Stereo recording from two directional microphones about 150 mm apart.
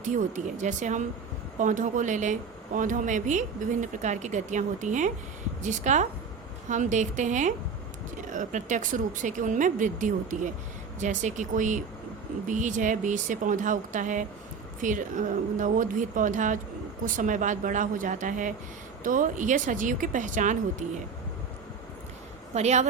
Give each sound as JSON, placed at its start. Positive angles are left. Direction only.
{"t": 0.0, "sound": "speech", "side_deg": -55}
{"t": 22.5, "sound": "speech", "side_deg": -50}